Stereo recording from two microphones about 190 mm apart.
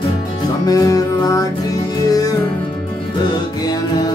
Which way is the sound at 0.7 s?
20° left (ahead or behind).